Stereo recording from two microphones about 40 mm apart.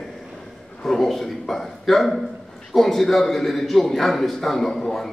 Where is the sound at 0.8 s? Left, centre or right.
Centre.